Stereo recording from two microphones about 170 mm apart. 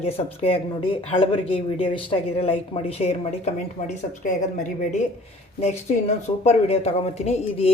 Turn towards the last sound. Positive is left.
turn(degrees=40)  # may be behind; listen again after turning